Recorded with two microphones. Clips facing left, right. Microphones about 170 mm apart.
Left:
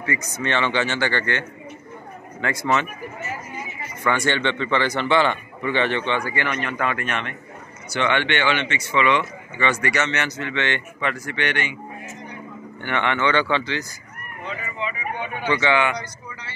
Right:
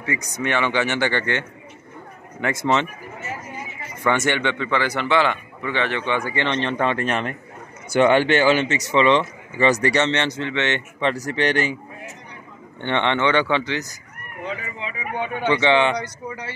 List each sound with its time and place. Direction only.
0.0 s speech: 15° right (ahead or behind)
2.4 s speech: 25° right (ahead or behind)
4.0 s speech: 15° right (ahead or behind); by 6.0 s centre (ahead or behind)
6.0 s speech: 20° right (ahead or behind); by 11.7 s 35° right (ahead or behind)
12.8 s speech: 20° right (ahead or behind)
15.5 s speech: 25° right (ahead or behind)